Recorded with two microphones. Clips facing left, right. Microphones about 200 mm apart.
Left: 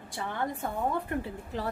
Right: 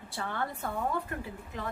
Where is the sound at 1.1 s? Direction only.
30° left (ahead or behind).